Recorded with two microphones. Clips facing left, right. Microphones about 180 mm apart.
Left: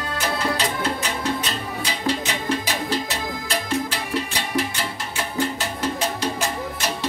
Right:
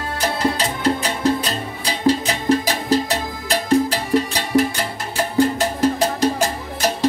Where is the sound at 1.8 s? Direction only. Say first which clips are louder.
Right 8 dB; 35° right (ahead or behind).